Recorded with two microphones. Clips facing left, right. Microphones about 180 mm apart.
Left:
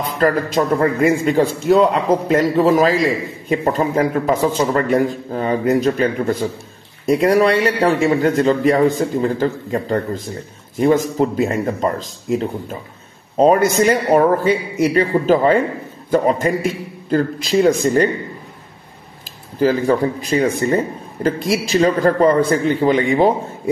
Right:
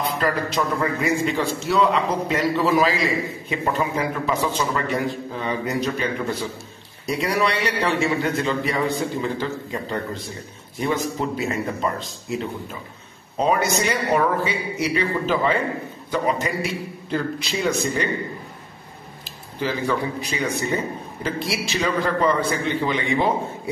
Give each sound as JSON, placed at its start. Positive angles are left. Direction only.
{"t": 0.2, "sound": "a man's voice", "side_deg": 45}
{"t": 19.6, "sound": "a man's voice", "side_deg": 45}